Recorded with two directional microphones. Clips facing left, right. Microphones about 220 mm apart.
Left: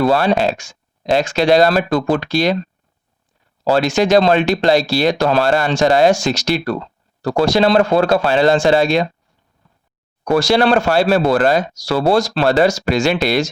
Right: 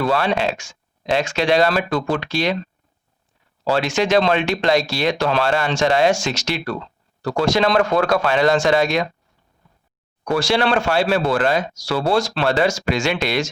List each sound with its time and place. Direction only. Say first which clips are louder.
0.0 s speech: left 5 dB; 35° left (ahead or behind)
3.6 s speech: left 4 dB; 40° left (ahead or behind)
10.3 s speech: left 5 dB; 40° left (ahead or behind)